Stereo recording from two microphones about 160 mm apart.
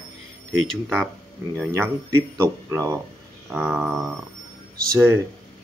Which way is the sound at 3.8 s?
Centre (ahead or behind).